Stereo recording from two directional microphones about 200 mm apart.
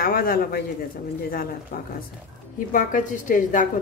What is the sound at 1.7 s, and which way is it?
A woman's voice, 45° left (ahead or behind).